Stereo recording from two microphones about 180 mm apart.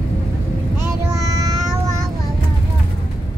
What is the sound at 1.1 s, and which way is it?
Child singing, 20° right (ahead or behind).